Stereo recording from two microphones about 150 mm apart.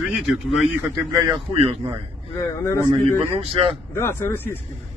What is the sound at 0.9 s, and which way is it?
Speech, 20° right (ahead or behind).